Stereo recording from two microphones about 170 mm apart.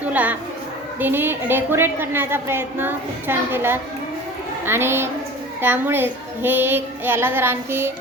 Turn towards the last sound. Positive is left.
turn(degrees=-15)  # may be behind; listen again after turning